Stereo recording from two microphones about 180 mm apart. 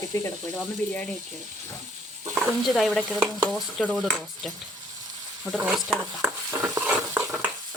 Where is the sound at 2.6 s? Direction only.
Centre (ahead or behind).